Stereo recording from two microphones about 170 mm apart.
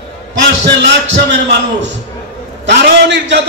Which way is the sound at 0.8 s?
90° right.